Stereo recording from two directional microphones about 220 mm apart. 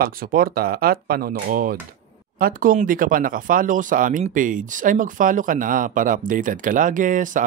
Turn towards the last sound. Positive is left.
turn(degrees=-35)  # may be behind; listen again after turning